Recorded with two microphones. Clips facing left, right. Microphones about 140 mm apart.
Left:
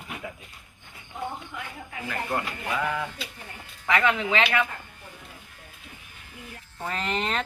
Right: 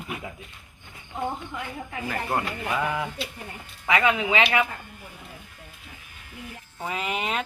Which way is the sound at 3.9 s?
10° right (ahead or behind).